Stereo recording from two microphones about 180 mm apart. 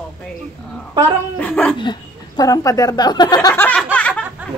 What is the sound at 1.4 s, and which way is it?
Speech, 5° left (ahead or behind).